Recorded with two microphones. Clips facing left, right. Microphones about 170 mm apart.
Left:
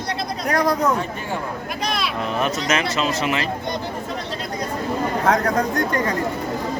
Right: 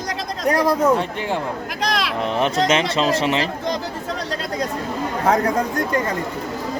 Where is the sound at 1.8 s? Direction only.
90° right.